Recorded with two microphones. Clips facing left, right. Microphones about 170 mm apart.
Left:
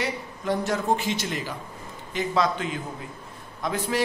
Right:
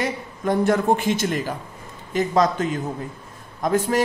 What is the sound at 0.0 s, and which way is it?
A man's voice, 50° right (ahead or behind).